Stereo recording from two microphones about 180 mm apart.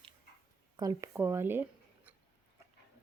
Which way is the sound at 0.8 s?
20° right (ahead or behind).